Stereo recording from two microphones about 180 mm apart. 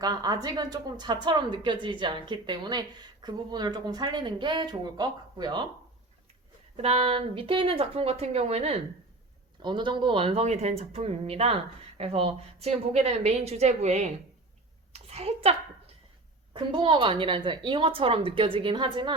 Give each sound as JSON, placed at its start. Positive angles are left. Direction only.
{"t": 0.0, "sound": "a woman's voice", "side_deg": -20}
{"t": 6.7, "sound": "a woman's voice", "side_deg": -35}
{"t": 9.6, "sound": "a woman's voice", "side_deg": -25}
{"t": 16.6, "sound": "a woman's voice", "side_deg": -25}